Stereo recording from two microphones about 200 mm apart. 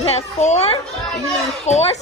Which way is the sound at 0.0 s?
35° left (ahead or behind).